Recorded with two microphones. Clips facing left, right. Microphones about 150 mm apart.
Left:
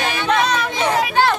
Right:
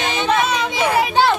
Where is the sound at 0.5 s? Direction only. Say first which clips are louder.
Right 1 dB; 10° right (ahead or behind).